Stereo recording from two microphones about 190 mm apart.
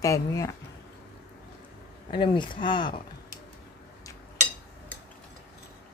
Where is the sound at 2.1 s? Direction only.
25° left (ahead or behind).